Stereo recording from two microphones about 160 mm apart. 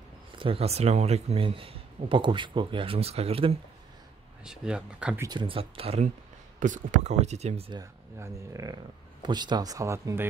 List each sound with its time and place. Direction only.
0.4 s speech: 35° right (ahead or behind)
4.5 s speech: 5° right (ahead or behind)
5.2 s speech: 30° right (ahead or behind)
6.6 s speech: 50° right (ahead or behind)
7.8 s speech: 20° right (ahead or behind)